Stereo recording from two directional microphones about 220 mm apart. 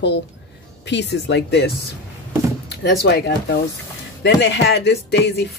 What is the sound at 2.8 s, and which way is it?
Speech, 50° left (ahead or behind).